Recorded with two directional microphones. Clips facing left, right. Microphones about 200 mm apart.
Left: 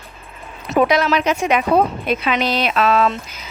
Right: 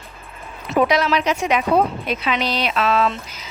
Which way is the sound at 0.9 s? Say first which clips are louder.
Left 2 dB; 50° left (ahead or behind).